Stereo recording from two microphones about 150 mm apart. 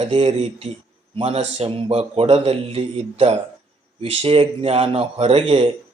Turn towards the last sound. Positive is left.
turn(degrees=-40)  # may be behind; listen again after turning